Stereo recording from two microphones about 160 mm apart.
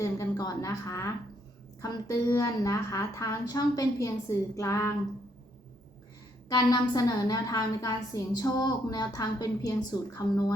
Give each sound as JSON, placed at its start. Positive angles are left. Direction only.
{"t": 0.0, "sound": "a woman's voice", "side_deg": 20}
{"t": 6.5, "sound": "a woman's voice", "side_deg": 25}